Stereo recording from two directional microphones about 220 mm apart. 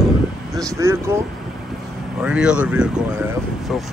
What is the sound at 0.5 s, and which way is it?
Speech, 15° right (ahead or behind).